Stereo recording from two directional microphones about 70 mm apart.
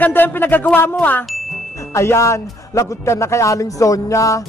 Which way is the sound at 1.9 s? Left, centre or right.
Left.